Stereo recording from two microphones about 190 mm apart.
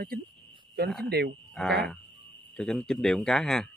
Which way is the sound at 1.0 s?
55° right (ahead or behind).